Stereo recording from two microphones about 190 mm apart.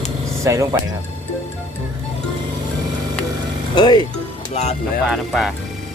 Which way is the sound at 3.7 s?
20° left (ahead or behind).